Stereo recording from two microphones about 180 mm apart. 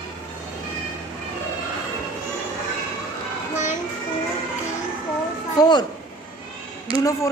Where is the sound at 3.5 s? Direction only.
40° left (ahead or behind).